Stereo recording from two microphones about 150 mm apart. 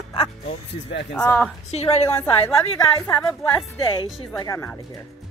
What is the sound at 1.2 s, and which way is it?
Speech, 10° left (ahead or behind).